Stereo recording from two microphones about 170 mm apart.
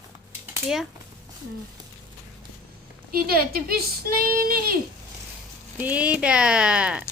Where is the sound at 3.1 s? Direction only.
60° right (ahead or behind).